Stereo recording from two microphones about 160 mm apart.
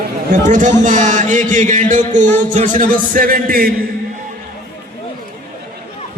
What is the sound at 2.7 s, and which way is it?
Speech, 60° right (ahead or behind).